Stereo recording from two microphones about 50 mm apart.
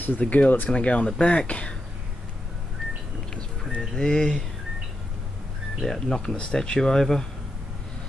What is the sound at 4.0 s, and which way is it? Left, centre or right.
Speech, centre.